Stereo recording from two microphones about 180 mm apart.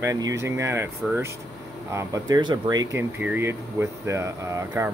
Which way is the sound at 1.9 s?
20° right (ahead or behind).